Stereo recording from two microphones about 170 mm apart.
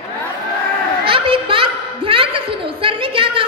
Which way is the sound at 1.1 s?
30° right (ahead or behind).